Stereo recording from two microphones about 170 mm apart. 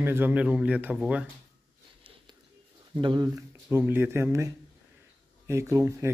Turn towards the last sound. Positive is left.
turn(degrees=-15)  # may be behind; listen again after turning